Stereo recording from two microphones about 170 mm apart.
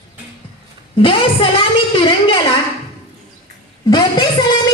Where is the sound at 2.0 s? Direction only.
30° left (ahead or behind).